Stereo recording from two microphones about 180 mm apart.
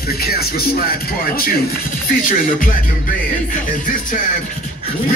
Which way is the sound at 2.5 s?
50° left (ahead or behind).